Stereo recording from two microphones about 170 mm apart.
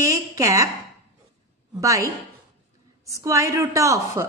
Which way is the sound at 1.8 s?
20° right (ahead or behind).